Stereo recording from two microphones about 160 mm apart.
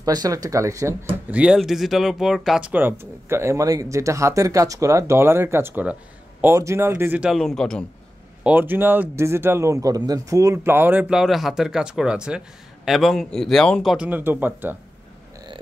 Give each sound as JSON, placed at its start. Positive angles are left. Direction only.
{"t": 0.0, "sound": "speech", "side_deg": -25}
{"t": 1.3, "sound": "speech", "side_deg": -5}
{"t": 8.5, "sound": "speech", "side_deg": -10}
{"t": 13.9, "sound": "speech", "side_deg": -10}